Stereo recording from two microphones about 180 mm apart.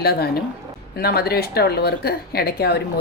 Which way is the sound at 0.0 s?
60° left (ahead or behind).